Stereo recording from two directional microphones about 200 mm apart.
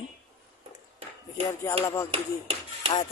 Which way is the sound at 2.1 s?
30° right (ahead or behind).